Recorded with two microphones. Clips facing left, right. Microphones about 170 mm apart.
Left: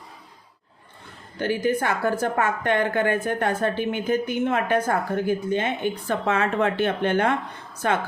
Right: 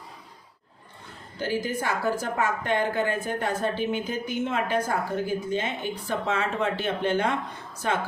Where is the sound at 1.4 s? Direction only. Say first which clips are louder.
Left 5 dB; 60° left (ahead or behind).